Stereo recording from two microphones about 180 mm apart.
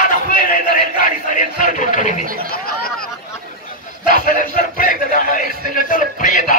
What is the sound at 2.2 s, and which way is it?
Chatter, 50° right (ahead or behind).